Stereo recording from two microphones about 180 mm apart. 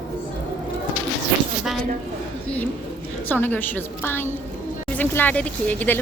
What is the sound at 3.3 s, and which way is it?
Speech, 10° left (ahead or behind).